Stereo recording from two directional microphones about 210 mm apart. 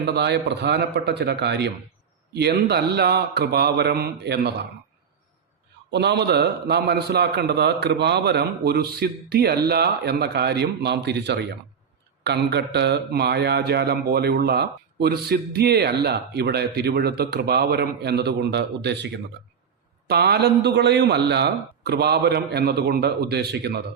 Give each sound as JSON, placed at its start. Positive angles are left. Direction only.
{"t": 0.0, "sound": "speech", "side_deg": -55}
{"t": 5.9, "sound": "speech", "side_deg": -55}